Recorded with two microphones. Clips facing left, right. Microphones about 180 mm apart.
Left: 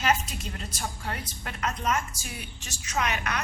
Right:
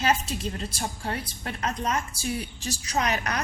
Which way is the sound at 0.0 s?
30° right (ahead or behind).